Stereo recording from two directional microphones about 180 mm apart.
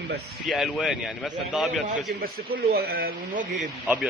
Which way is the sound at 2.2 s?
55° right (ahead or behind).